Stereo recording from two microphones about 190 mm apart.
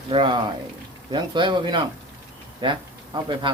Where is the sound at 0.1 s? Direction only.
25° right (ahead or behind).